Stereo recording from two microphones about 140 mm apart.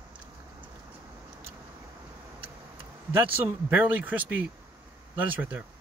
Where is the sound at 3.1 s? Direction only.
15° right (ahead or behind).